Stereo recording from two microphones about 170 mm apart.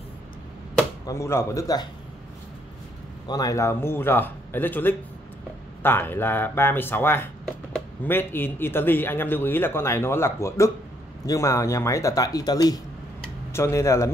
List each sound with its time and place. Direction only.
1.0 s a man's voice: 15° left (ahead or behind)
3.3 s a man's voice: 20° left (ahead or behind)